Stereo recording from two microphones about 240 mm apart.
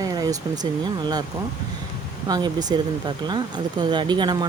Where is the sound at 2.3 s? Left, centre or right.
Centre.